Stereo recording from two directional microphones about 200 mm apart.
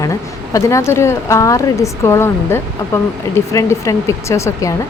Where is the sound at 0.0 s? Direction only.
15° left (ahead or behind).